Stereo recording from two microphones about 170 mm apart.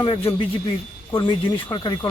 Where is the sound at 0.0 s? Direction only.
25° left (ahead or behind).